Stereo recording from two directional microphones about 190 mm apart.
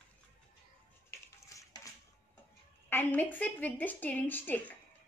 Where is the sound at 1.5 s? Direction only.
15° left (ahead or behind).